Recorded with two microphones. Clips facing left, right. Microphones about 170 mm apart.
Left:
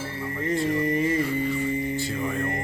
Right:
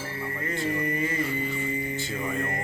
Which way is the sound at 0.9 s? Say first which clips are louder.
Left 6 dB; 30° left (ahead or behind).